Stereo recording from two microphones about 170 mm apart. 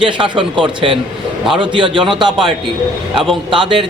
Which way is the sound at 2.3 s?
Centre (ahead or behind).